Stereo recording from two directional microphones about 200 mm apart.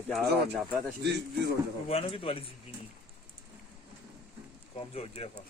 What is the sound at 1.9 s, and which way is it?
Speech, 30° left (ahead or behind).